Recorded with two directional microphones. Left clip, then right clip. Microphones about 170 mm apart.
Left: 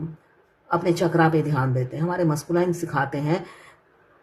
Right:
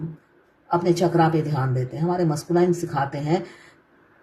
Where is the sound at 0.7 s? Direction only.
40° left (ahead or behind).